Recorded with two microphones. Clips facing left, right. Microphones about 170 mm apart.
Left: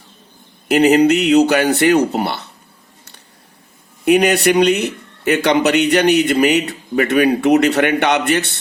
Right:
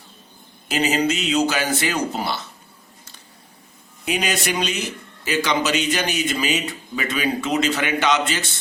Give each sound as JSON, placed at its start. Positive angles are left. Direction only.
{"t": 0.7, "sound": "a man's voice", "side_deg": 65}
{"t": 4.0, "sound": "a man's voice", "side_deg": 60}